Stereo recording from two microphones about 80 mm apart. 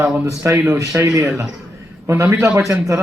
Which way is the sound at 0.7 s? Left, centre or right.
Right.